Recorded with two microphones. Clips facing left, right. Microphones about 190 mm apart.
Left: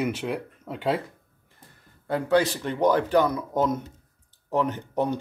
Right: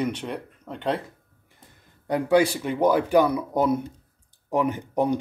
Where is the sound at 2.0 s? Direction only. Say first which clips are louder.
Right 2 dB; 15° right (ahead or behind).